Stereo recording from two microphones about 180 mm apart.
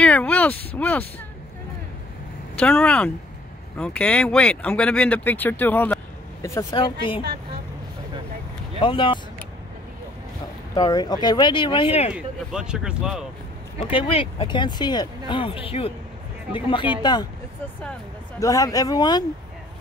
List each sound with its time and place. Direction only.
0.0 s a sound: 10° left (ahead or behind)
0.7 s speech: 10° left (ahead or behind)
2.6 s speech: 5° left (ahead or behind); by 7.2 s 25° left (ahead or behind)
8.8 s speech: 25° left (ahead or behind)
10.7 s speech: 20° left (ahead or behind)
12.1 s speech: 5° right (ahead or behind)
13.8 s speech: 30° left (ahead or behind)
17.0 s speech: 25° left (ahead or behind)
18.4 s speech: 20° left (ahead or behind)